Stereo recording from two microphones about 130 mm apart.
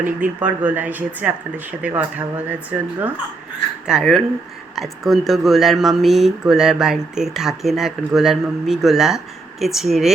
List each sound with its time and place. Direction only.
0.0 s speech: 15° right (ahead or behind)
3.8 s speech: 5° right (ahead or behind)